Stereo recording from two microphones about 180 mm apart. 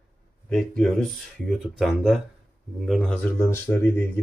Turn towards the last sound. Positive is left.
turn(degrees=10)  # may be behind; listen again after turning